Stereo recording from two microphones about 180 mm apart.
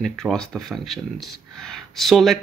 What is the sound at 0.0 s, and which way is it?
Speech, centre (ahead or behind).